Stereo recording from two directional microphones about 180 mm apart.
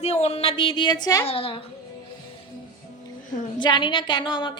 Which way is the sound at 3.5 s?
25° left (ahead or behind).